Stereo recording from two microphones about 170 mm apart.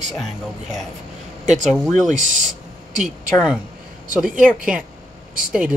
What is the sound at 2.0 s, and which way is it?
Speech, 50° right (ahead or behind).